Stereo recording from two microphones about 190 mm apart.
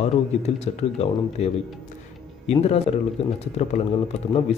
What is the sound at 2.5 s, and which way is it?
Speech, 35° left (ahead or behind).